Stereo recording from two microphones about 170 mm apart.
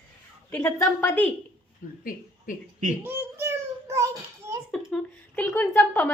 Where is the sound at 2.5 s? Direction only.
55° left (ahead or behind).